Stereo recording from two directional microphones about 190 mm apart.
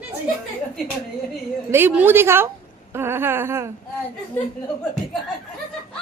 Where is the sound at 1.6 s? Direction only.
10° right (ahead or behind).